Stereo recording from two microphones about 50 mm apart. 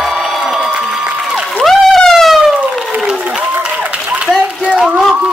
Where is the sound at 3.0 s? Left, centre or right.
Centre.